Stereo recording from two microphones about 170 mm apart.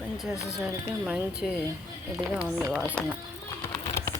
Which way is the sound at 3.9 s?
15° left (ahead or behind).